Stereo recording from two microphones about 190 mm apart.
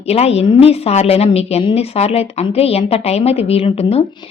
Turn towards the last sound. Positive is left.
turn(degrees=30)  # may be behind; listen again after turning